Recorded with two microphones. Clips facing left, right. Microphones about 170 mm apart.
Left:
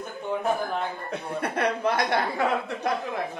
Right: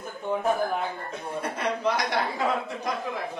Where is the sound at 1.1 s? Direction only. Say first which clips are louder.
Left 3 dB; 65° left (ahead or behind).